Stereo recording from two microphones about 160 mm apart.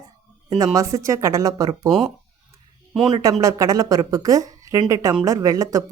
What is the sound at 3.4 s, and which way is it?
Speech, 20° right (ahead or behind).